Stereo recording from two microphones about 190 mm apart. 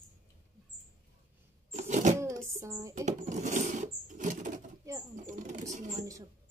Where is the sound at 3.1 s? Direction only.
40° right (ahead or behind).